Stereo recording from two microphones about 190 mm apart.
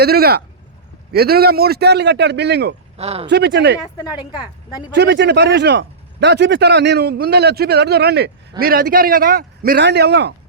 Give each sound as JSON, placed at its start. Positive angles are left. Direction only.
{"t": 0.0, "sound": "speech", "side_deg": -55}
{"t": 3.0, "sound": "speech", "side_deg": -35}
{"t": 3.2, "sound": "speech", "side_deg": -65}
{"t": 4.1, "sound": "a woman's voice", "side_deg": -5}
{"t": 4.9, "sound": "speech", "side_deg": -65}